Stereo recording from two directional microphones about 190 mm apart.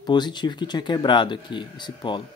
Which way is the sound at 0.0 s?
25° left (ahead or behind).